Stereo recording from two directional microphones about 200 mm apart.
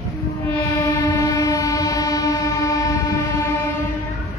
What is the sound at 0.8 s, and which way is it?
Train, 15° left (ahead or behind).